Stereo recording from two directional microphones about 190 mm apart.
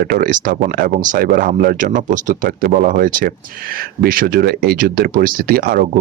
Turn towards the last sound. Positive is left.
turn(degrees=-50)  # may be behind; listen again after turning